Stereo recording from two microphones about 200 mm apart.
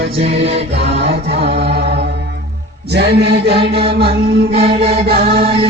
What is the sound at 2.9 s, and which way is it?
Mantra, 55° right (ahead or behind).